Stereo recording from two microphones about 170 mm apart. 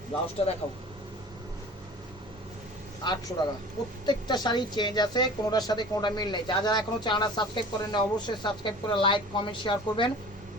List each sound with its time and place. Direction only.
0.4 s speech: 35° left (ahead or behind)
3.0 s a woman's voice: 25° left (ahead or behind)